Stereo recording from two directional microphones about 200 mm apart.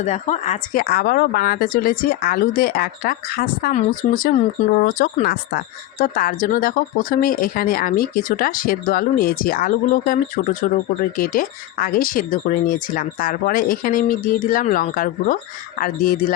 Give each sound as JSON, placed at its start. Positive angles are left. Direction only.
{"t": 0.0, "sound": "speech", "side_deg": 35}